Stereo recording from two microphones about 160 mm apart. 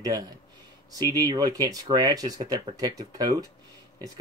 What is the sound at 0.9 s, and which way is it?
Speech, 25° right (ahead or behind).